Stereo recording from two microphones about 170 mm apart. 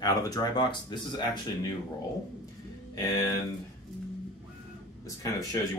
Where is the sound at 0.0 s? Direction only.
20° left (ahead or behind).